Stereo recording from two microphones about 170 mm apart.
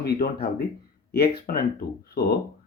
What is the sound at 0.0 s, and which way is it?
Speech, 65° left (ahead or behind).